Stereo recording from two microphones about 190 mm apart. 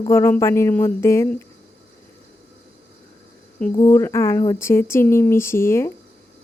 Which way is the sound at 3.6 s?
10° left (ahead or behind).